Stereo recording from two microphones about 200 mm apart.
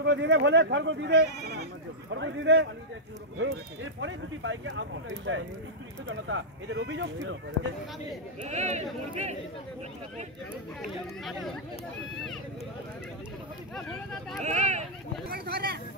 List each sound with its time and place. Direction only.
0.0 s speech: 60° right (ahead or behind)
8.4 s speech: 35° right (ahead or behind)
13.7 s speech: 5° left (ahead or behind)
14.4 s speech: 35° right (ahead or behind)
15.3 s speech: 50° right (ahead or behind)